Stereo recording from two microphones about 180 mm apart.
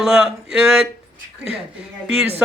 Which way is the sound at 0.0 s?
Centre (ahead or behind).